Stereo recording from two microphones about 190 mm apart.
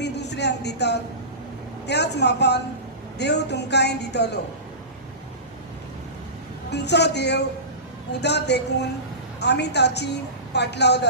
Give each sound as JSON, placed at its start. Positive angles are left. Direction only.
{"t": 0.0, "sound": "a sound", "side_deg": 65}
{"t": 1.9, "sound": "a woman's voice", "side_deg": 60}
{"t": 6.7, "sound": "a woman's voice", "side_deg": 65}